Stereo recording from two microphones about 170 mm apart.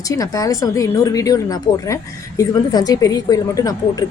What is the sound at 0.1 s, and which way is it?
A woman's voice, 20° left (ahead or behind).